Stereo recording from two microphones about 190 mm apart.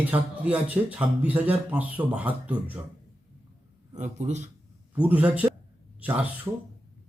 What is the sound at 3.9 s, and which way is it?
Speech, 40° right (ahead or behind).